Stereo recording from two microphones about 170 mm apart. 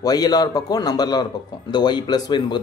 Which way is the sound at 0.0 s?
25° left (ahead or behind).